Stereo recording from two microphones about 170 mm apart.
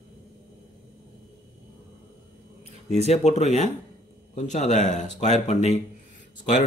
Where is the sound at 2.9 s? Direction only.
40° left (ahead or behind).